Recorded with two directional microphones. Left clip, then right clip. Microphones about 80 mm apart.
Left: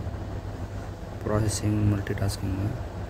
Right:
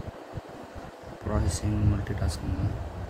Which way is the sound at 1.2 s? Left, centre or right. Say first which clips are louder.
Left 4 dB; left.